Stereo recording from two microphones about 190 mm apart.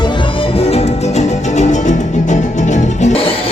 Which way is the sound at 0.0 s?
25° left (ahead or behind).